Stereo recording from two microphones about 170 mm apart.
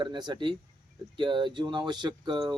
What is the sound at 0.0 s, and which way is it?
Speech, 25° right (ahead or behind).